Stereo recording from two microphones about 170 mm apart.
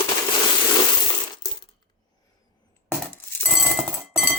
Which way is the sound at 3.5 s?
Centre (ahead or behind).